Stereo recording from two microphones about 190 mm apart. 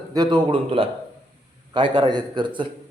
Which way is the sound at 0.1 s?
20° right (ahead or behind).